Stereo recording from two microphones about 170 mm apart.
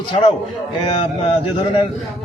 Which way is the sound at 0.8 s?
35° left (ahead or behind).